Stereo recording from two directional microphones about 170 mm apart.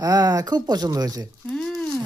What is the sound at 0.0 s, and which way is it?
Speech, 20° right (ahead or behind).